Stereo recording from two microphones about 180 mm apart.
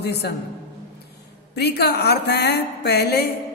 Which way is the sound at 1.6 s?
65° left (ahead or behind).